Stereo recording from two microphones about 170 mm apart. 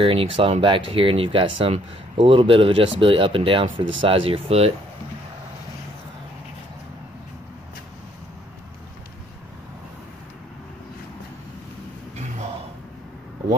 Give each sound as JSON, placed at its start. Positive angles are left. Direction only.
{"t": 0.0, "sound": "speech", "side_deg": -30}
{"t": 3.7, "sound": "speech", "side_deg": -90}
{"t": 4.0, "sound": "speech", "side_deg": -35}